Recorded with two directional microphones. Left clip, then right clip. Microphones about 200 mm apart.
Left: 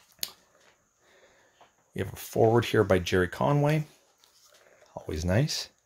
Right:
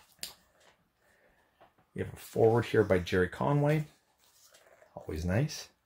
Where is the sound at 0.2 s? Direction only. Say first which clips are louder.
Left 7 dB; 30° left (ahead or behind).